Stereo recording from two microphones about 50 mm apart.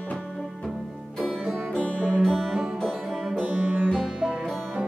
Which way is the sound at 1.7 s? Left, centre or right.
Left.